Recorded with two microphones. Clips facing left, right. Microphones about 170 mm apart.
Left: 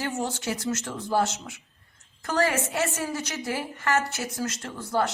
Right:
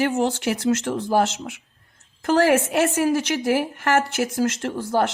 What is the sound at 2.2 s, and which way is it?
A woman's voice, 70° right (ahead or behind).